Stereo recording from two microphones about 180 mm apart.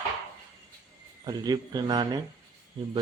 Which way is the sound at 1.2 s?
20° right (ahead or behind).